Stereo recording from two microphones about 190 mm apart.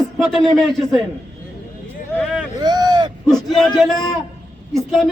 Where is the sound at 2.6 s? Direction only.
20° right (ahead or behind).